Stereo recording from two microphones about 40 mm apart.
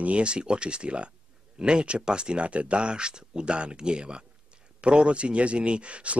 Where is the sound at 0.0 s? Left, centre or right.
Right.